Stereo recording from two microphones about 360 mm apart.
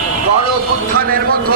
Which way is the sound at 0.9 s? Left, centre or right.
Right.